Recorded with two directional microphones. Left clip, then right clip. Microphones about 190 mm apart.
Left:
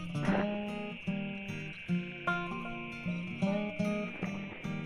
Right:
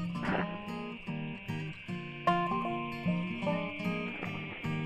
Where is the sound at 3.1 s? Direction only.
50° left (ahead or behind).